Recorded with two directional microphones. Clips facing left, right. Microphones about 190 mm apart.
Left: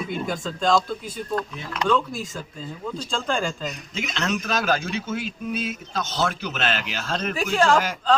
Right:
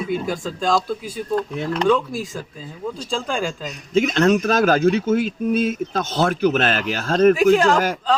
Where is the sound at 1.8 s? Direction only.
10° right (ahead or behind).